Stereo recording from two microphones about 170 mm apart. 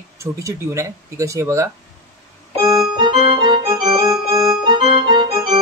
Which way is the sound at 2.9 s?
30° right (ahead or behind).